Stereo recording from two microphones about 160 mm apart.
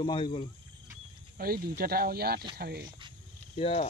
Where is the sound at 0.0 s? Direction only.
30° left (ahead or behind).